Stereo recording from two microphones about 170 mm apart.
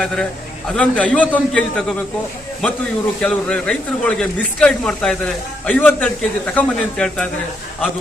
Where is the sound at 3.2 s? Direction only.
5° left (ahead or behind).